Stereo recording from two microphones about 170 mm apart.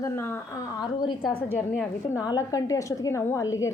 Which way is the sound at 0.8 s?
25° left (ahead or behind).